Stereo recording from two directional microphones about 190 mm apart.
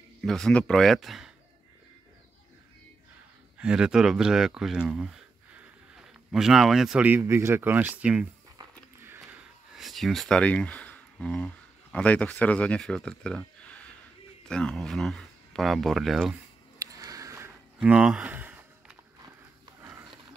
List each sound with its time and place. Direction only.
0.2 s speech: 5° left (ahead or behind)
3.5 s a man's voice: 5° right (ahead or behind)
8.5 s music: 15° right (ahead or behind)
9.8 s speech: centre (ahead or behind)
16.7 s a sound: 15° right (ahead or behind)
17.7 s a sound: 5° right (ahead or behind)